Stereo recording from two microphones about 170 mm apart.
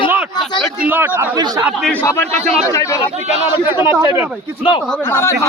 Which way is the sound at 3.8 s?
25° left (ahead or behind).